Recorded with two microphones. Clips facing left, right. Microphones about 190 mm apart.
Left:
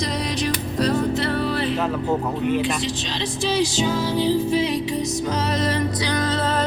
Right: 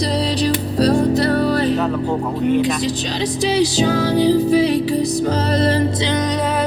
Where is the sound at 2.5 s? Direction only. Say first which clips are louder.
Right 8 dB; 40° right (ahead or behind).